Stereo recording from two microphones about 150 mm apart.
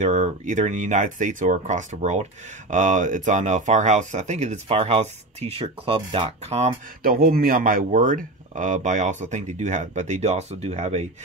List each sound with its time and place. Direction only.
0.0 s speech: 50° right (ahead or behind)
7.0 s speech: 85° right; by 11.1 s 45° right (ahead or behind)